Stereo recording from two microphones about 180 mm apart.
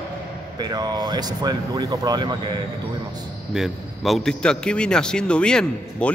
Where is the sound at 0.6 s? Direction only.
20° right (ahead or behind).